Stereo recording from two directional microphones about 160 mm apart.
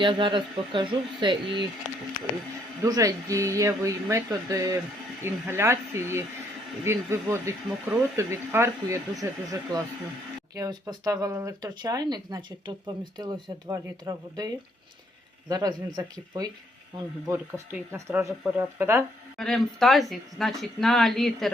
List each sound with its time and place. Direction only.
0.0 s speech: 30° right (ahead or behind)
2.8 s speech: 20° right (ahead or behind)
19.4 s speech: centre (ahead or behind)